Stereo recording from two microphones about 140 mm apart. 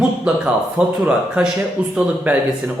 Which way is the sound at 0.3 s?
5° right (ahead or behind).